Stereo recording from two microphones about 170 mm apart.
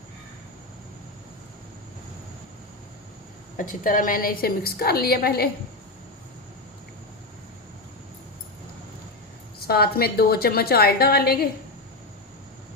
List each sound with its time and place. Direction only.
3.6 s a woman's voice: 50° left (ahead or behind)
9.6 s a woman's voice: 65° left (ahead or behind)